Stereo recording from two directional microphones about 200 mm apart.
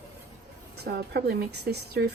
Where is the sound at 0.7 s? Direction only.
55° right (ahead or behind).